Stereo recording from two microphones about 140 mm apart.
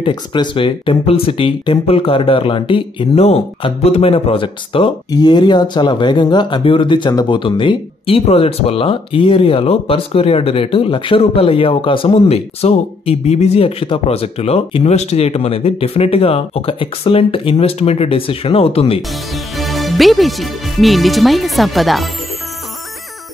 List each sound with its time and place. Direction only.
0.0 s speech: 35° left (ahead or behind)
19.3 s speech: centre (ahead or behind)